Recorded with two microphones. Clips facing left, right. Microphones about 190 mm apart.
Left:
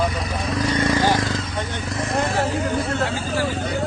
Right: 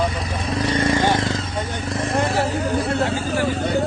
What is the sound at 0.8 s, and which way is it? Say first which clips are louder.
Vehicle: right 1 dB; 25° right (ahead or behind).